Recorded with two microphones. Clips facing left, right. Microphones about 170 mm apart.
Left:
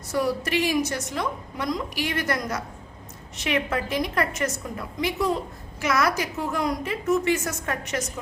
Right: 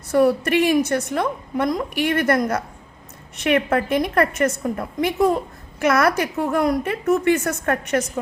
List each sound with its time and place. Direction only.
0.1 s a woman's voice: 55° right (ahead or behind)